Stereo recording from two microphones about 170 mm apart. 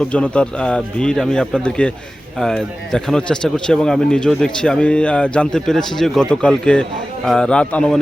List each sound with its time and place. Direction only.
0.1 s a man's voice: 5° left (ahead or behind)